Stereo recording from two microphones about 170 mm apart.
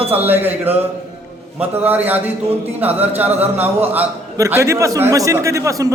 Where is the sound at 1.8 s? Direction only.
10° right (ahead or behind).